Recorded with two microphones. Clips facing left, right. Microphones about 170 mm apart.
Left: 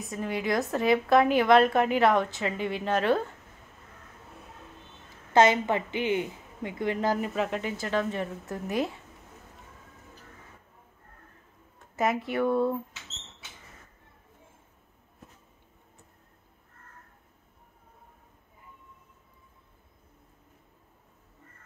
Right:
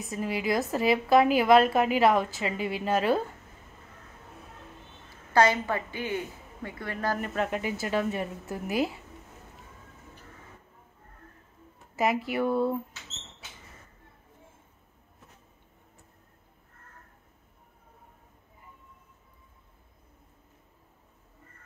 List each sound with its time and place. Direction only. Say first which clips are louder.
0.0 s a woman's voice: right 1 dB; 5° right (ahead or behind)
5.3 s a woman's voice: left 2 dB; 20° left (ahead or behind)
7.2 s a woman's voice: left 1 dB; 5° left (ahead or behind)
11.9 s a woman's voice: even; 5° right (ahead or behind)